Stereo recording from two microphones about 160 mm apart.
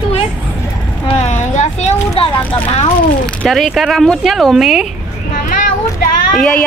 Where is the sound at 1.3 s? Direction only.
45° left (ahead or behind).